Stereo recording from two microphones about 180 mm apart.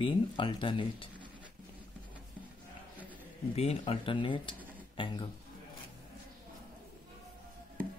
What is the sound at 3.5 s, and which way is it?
Speech, 35° left (ahead or behind).